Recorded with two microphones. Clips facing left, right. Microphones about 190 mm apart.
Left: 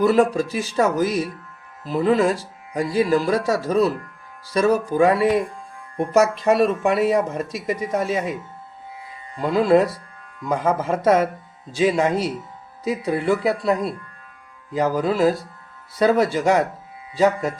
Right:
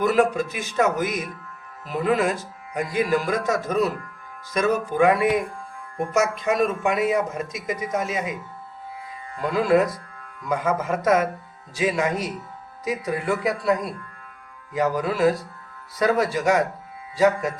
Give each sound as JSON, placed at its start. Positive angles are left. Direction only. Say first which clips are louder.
{"t": 0.0, "sound": "speech", "louder": "left 3 dB", "side_deg": 30}
{"t": 9.4, "sound": "speech", "louder": "left 3 dB", "side_deg": 30}